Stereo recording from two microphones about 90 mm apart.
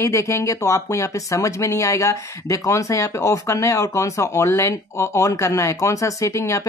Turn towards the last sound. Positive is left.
turn(degrees=35)  # may be behind; listen again after turning